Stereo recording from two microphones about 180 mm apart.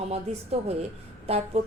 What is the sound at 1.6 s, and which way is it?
Speech, 35° right (ahead or behind).